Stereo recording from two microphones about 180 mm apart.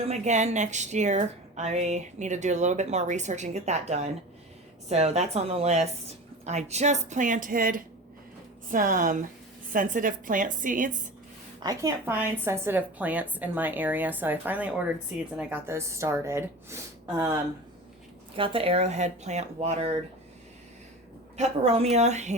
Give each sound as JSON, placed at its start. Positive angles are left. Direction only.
{"t": 0.0, "sound": "a woman's voice", "side_deg": -40}
{"t": 11.6, "sound": "a woman's voice", "side_deg": -20}
{"t": 18.3, "sound": "speech", "side_deg": -30}
{"t": 21.3, "sound": "speech", "side_deg": -35}